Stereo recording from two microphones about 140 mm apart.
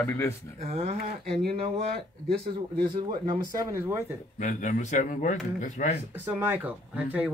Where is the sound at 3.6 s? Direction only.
20° right (ahead or behind).